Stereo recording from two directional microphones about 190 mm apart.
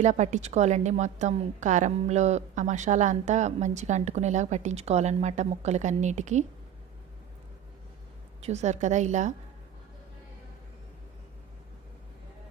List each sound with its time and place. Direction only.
0.0 s a woman's voice: 40° right (ahead or behind)
8.4 s a woman's voice: 35° right (ahead or behind)